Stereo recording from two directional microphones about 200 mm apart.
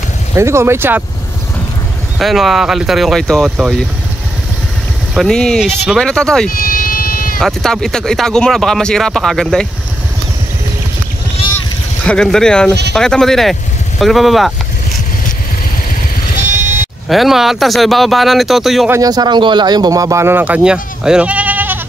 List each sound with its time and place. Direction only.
0.4 s speech: 15° right (ahead or behind)
2.1 s speech: centre (ahead or behind)
5.1 s speech: centre (ahead or behind)
6.5 s music: 45° left (ahead or behind)
7.3 s speech: centre (ahead or behind)
12.1 s speech: 5° left (ahead or behind)
17.1 s speech: centre (ahead or behind)
18.9 s speech: 20° right (ahead or behind)